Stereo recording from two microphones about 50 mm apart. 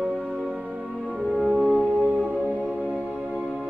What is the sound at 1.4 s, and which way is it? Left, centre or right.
Music, centre.